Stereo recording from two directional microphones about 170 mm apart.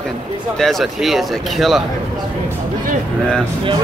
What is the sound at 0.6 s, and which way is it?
Speech, centre (ahead or behind).